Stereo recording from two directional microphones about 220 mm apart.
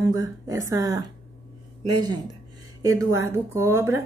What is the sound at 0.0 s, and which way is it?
A woman's voice, 15° right (ahead or behind).